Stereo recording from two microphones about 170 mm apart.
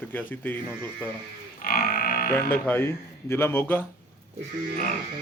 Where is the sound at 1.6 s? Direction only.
60° left (ahead or behind).